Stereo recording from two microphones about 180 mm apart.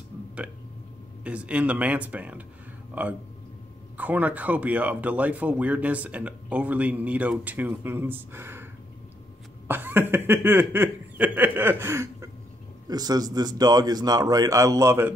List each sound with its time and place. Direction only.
1.2 s speech: 5° right (ahead or behind)
9.7 s a sound: 10° right (ahead or behind)
12.8 s a man's voice: 20° right (ahead or behind)